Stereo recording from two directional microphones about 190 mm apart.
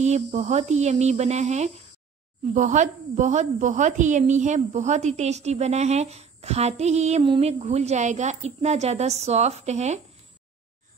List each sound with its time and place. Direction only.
0.0 s a woman's voice: 35° right (ahead or behind)